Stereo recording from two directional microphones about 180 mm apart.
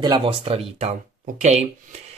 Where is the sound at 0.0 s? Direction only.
25° right (ahead or behind).